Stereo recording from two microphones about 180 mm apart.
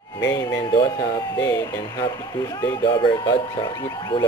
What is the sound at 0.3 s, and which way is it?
Speech, 25° left (ahead or behind).